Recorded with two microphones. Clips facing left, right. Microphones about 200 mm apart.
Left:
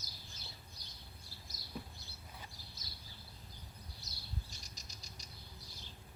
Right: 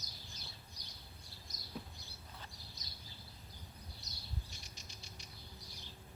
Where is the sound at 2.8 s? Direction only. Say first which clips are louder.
Left 1 dB; 20° right (ahead or behind).